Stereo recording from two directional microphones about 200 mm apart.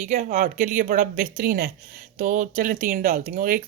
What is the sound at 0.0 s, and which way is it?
Speech, 40° right (ahead or behind).